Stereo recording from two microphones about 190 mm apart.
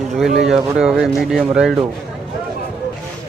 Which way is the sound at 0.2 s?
Centre (ahead or behind).